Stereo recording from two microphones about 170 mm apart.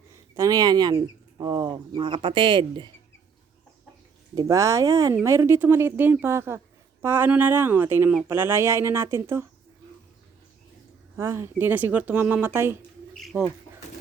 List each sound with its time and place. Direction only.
0.1 s speech: 20° right (ahead or behind)
4.4 s speech: 20° right (ahead or behind)
11.2 s speech: 15° right (ahead or behind)